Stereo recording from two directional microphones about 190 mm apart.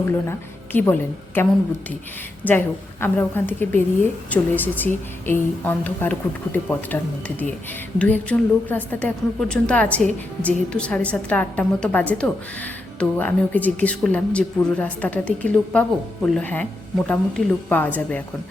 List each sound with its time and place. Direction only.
0.3 s a woman's voice: 10° left (ahead or behind)
2.4 s a woman's voice: 10° left (ahead or behind)